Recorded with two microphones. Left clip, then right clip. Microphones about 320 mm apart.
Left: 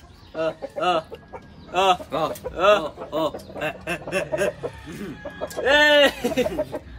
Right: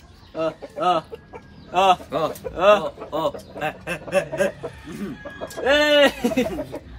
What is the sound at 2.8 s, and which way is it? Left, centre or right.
Speech, centre.